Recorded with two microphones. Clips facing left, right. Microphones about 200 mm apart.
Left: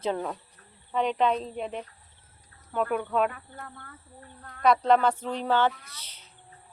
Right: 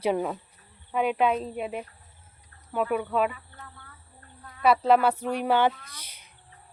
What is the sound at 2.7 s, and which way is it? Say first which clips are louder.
Speech: right 1 dB; 5° right (ahead or behind).